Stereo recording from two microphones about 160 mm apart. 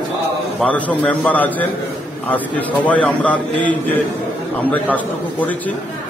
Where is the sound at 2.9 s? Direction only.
10° left (ahead or behind).